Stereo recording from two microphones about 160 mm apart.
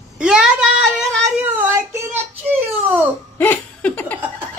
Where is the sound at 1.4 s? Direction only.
15° right (ahead or behind).